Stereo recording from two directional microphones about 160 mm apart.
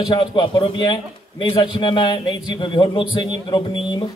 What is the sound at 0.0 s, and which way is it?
A man's voice, 25° left (ahead or behind).